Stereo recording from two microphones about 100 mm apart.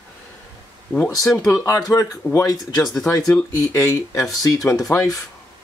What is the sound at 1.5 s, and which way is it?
Speech, 30° left (ahead or behind).